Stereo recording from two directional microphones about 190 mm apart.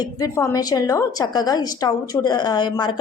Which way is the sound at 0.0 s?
15° left (ahead or behind).